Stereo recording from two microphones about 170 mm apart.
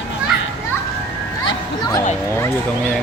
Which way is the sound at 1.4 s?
25° left (ahead or behind).